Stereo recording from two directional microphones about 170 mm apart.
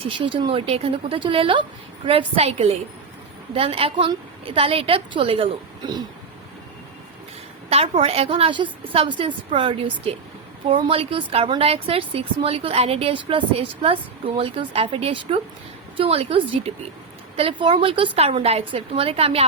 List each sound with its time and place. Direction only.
0.0 s a woman's voice: 30° right (ahead or behind)
7.7 s a woman's voice: 35° right (ahead or behind)